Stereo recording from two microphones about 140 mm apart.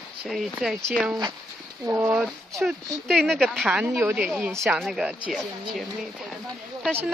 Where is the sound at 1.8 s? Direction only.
20° right (ahead or behind).